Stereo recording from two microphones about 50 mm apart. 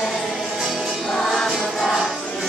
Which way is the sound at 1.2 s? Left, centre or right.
Centre.